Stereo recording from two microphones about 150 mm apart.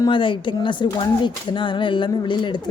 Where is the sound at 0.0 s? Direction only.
35° left (ahead or behind).